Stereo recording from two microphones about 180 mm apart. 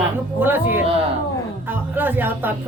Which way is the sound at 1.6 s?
10° right (ahead or behind).